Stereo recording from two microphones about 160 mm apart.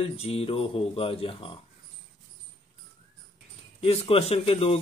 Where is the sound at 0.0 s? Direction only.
40° left (ahead or behind).